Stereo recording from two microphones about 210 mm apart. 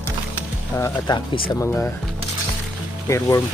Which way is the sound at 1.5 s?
15° left (ahead or behind).